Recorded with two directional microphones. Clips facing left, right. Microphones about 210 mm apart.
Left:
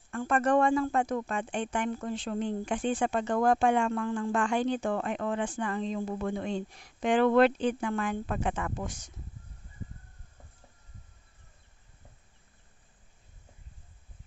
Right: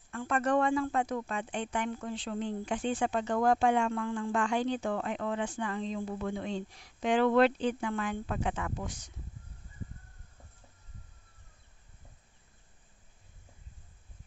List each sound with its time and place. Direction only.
0.1 s speech: 45° left (ahead or behind)